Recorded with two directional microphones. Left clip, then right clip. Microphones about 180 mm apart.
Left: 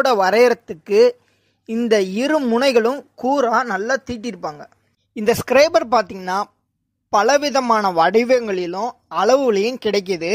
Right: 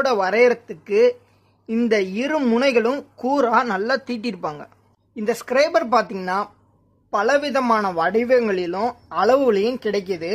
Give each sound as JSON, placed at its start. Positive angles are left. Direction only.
{"t": 0.0, "sound": "a woman's voice", "side_deg": 40}
{"t": 5.1, "sound": "speech", "side_deg": 45}